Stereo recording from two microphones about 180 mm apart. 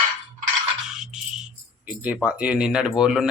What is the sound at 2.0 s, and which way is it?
Speech, 10° right (ahead or behind).